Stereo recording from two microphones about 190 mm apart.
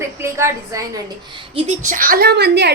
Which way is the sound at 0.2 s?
15° right (ahead or behind).